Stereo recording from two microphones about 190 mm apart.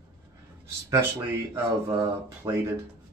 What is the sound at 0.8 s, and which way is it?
Speech, 15° right (ahead or behind).